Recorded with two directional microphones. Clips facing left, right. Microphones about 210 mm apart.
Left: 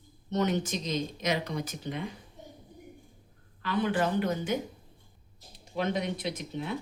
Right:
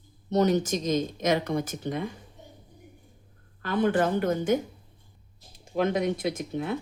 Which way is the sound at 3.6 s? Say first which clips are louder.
Right 4 dB; 50° right (ahead or behind).